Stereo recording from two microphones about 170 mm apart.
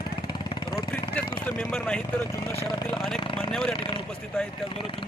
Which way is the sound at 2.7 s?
25° left (ahead or behind).